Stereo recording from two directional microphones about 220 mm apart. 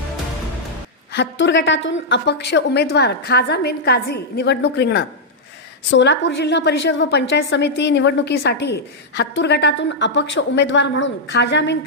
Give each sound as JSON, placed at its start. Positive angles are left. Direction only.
{"t": 1.1, "sound": "a woman's voice", "side_deg": 55}